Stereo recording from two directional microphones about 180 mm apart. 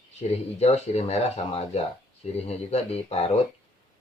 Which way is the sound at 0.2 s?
35° left (ahead or behind).